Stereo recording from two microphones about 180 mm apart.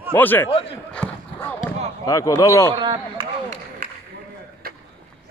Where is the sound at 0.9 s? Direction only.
10° left (ahead or behind).